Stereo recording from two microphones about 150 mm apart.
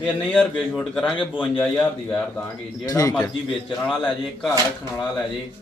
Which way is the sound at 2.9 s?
25° left (ahead or behind).